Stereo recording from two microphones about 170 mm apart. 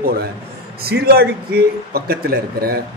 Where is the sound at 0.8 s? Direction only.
65° right (ahead or behind).